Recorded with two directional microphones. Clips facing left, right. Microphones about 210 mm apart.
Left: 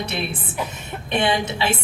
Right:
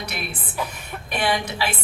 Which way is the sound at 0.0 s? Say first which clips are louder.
Left 5 dB; 25° left (ahead or behind).